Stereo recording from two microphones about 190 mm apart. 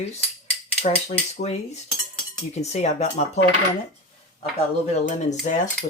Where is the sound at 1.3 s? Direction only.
35° left (ahead or behind).